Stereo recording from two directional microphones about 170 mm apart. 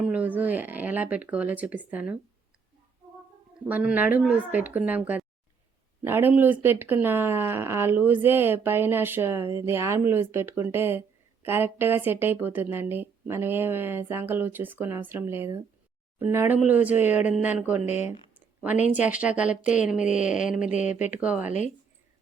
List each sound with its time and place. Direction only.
0.0 s speech: 10° right (ahead or behind)
3.6 s speech: 10° right (ahead or behind)
17.7 s speech: 40° left (ahead or behind)
18.0 s a sound: 10° right (ahead or behind)
18.8 s speech: 45° left (ahead or behind)
19.1 s speech: 5° right (ahead or behind)
20.1 s speech: 45° left (ahead or behind)
20.5 s speech: 5° right (ahead or behind)
20.7 s speech: 45° left (ahead or behind)
21.2 s speech: 10° right (ahead or behind)